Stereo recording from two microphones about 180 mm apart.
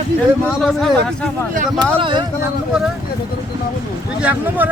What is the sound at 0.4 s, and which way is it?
Speech, centre (ahead or behind).